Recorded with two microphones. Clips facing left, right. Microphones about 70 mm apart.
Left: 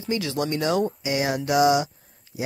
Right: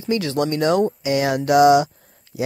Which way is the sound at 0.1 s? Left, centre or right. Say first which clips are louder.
Right 5 dB; right.